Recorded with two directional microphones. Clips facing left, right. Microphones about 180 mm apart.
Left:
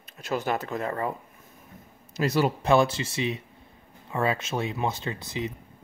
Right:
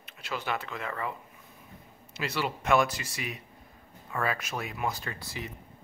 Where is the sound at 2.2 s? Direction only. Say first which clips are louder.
Left 8 dB; 40° left (ahead or behind).